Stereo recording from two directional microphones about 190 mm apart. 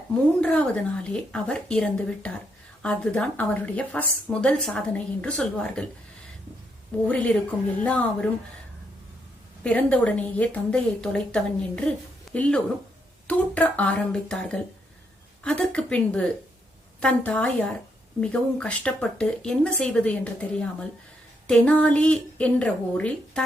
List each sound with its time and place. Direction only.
0.4 s a woman's voice: 5° left (ahead or behind)
7.1 s a woman's voice: 5° left (ahead or behind)
9.6 s a woman's voice: 10° left (ahead or behind)